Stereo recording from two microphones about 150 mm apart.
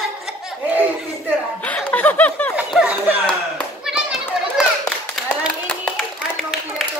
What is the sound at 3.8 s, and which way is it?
Hands, 5° right (ahead or behind).